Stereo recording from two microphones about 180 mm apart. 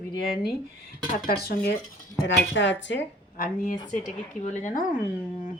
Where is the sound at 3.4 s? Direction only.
50° left (ahead or behind).